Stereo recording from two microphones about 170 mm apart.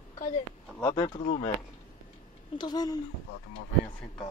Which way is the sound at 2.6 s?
25° left (ahead or behind).